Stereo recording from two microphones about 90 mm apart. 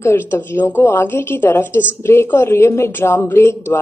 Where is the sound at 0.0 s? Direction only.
30° left (ahead or behind).